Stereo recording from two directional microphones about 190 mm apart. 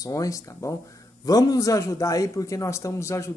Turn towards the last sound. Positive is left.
turn(degrees=15)  # may be behind; listen again after turning